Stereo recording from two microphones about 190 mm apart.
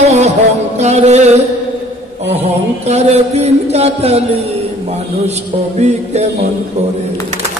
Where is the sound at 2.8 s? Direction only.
35° right (ahead or behind).